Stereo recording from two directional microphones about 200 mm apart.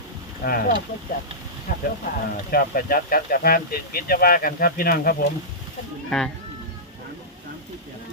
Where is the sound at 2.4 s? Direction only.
50° left (ahead or behind).